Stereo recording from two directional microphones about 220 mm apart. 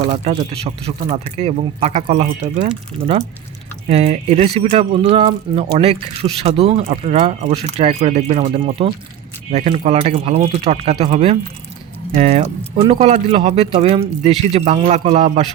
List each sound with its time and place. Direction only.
0.1 s speech: 30° right (ahead or behind)
3.8 s speech: 30° right (ahead or behind)